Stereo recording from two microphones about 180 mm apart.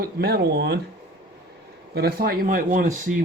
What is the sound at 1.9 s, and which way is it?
Speech, 60° right (ahead or behind).